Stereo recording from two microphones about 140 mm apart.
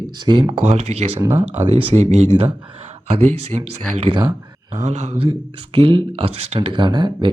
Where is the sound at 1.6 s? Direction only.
40° right (ahead or behind).